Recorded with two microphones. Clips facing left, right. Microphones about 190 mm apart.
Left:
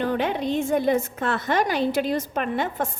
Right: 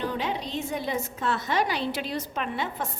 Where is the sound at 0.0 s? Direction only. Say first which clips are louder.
Left 6 dB; 55° left (ahead or behind).